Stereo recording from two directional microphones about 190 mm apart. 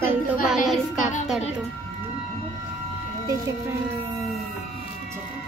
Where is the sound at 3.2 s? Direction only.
15° right (ahead or behind).